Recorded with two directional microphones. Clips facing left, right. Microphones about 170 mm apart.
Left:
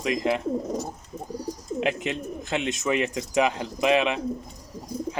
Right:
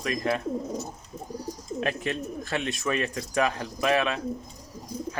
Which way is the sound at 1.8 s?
20° left (ahead or behind).